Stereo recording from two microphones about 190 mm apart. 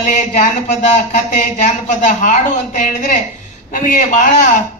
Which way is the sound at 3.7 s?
45° left (ahead or behind).